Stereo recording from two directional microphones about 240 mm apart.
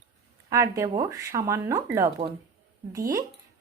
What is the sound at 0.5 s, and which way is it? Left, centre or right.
Speech, centre.